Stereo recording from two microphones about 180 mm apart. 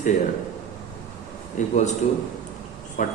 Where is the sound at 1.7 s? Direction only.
40° left (ahead or behind).